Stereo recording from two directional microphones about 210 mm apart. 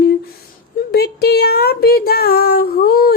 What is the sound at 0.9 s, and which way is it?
Speech, 50° left (ahead or behind).